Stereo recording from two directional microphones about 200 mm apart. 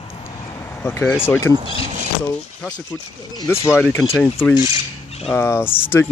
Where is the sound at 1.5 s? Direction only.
20° right (ahead or behind).